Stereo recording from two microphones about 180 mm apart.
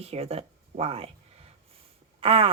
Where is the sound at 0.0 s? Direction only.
35° right (ahead or behind).